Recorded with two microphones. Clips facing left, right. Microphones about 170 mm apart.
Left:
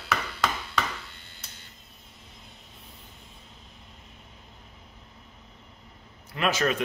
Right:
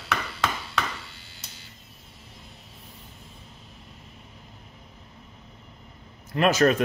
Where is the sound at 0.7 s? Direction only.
5° right (ahead or behind).